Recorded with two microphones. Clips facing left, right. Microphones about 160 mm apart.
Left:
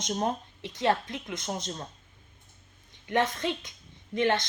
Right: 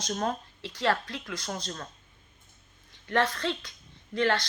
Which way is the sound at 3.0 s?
20° left (ahead or behind).